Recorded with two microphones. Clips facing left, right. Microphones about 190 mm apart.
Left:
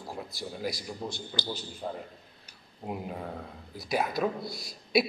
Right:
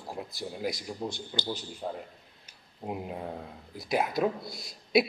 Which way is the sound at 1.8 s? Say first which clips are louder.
Even; 10° right (ahead or behind).